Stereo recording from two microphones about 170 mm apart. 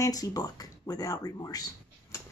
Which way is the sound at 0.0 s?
20° left (ahead or behind).